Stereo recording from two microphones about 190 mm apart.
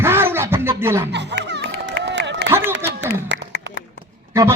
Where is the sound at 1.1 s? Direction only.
65° right (ahead or behind).